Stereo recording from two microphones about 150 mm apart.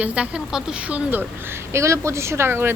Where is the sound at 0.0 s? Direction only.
10° right (ahead or behind).